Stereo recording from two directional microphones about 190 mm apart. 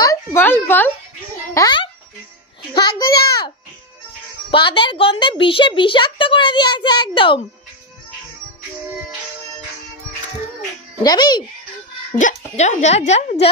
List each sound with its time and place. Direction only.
0.0 s a woman's voice: 15° left (ahead or behind)
4.5 s a woman's voice: 25° left (ahead or behind)
11.0 s a woman's voice: 20° left (ahead or behind)
12.2 s speech: 40° left (ahead or behind)